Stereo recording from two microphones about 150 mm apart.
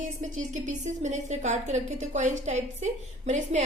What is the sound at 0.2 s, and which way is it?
A woman's voice, 55° right (ahead or behind).